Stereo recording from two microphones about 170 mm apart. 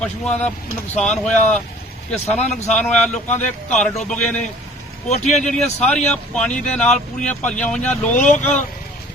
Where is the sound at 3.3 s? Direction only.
45° left (ahead or behind).